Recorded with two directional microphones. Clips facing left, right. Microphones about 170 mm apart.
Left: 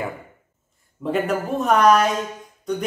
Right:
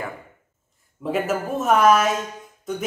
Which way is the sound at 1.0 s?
Centre (ahead or behind).